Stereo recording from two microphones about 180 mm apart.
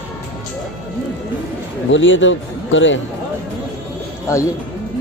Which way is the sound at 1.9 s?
90° left.